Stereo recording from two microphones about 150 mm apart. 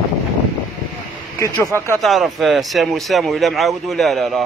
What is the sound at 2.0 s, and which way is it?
A man's voice, centre (ahead or behind).